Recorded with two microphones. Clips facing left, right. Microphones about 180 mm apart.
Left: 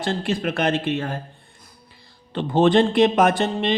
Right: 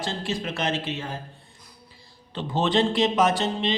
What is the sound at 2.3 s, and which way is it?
A man's voice, 50° left (ahead or behind).